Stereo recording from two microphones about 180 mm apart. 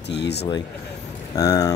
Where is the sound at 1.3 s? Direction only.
20° left (ahead or behind).